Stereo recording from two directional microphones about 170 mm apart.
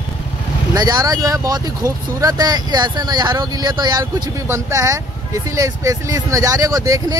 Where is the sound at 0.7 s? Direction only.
25° right (ahead or behind).